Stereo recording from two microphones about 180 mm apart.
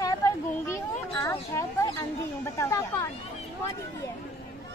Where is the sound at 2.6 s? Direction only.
15° left (ahead or behind).